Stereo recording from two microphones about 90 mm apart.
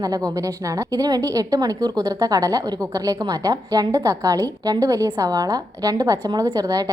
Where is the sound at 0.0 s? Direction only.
40° right (ahead or behind).